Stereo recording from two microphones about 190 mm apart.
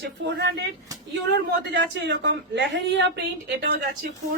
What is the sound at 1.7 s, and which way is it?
A woman's voice, 65° right (ahead or behind).